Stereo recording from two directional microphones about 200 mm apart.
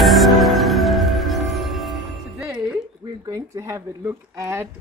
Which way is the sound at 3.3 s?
15° right (ahead or behind).